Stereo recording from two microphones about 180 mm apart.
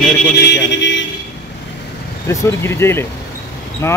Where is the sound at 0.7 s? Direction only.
80° left.